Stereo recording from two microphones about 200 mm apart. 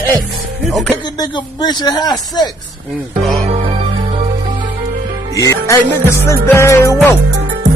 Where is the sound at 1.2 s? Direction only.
20° left (ahead or behind).